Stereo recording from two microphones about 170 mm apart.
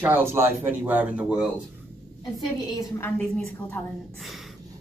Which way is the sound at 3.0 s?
10° left (ahead or behind).